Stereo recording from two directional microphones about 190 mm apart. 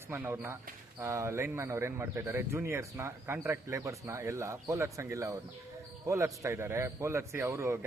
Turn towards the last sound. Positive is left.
turn(degrees=-15)  # may be behind; listen again after turning